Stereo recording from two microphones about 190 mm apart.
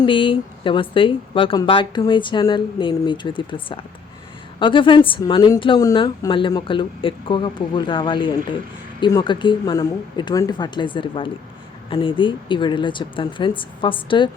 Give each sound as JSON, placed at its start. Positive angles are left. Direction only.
{"t": 0.0, "sound": "speech", "side_deg": 25}